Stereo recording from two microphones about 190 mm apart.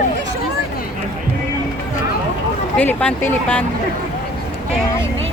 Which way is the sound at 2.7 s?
5° left (ahead or behind).